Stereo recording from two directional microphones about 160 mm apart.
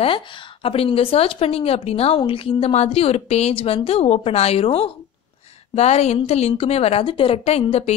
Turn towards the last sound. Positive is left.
turn(degrees=40)  # may be behind; listen again after turning